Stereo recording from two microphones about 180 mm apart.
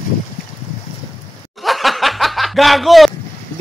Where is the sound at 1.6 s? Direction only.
Centre (ahead or behind).